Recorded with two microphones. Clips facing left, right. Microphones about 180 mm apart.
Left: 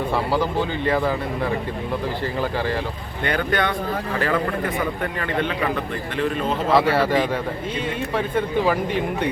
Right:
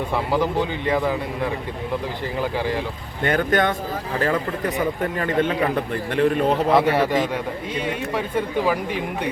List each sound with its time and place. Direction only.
0.3 s speech: 20° right (ahead or behind)
3.2 s a man's voice: 45° right (ahead or behind)
6.1 s a man's voice: 55° right (ahead or behind)
6.5 s speech: 15° right (ahead or behind)